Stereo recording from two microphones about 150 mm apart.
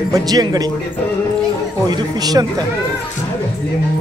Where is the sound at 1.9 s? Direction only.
25° right (ahead or behind).